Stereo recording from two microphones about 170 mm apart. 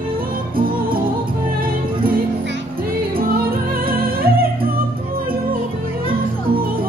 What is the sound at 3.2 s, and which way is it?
Music, 60° right (ahead or behind).